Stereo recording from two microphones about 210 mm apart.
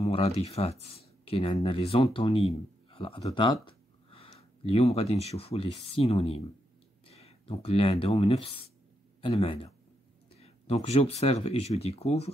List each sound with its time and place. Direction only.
0.0 s speech: 30° left (ahead or behind)